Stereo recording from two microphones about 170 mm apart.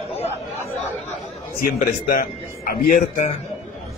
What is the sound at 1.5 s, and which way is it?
Speech, 55° left (ahead or behind).